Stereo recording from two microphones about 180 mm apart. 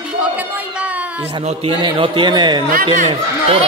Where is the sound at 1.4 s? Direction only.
30° right (ahead or behind).